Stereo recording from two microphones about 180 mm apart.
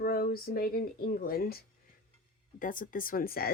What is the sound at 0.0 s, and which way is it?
Speech, 55° left (ahead or behind).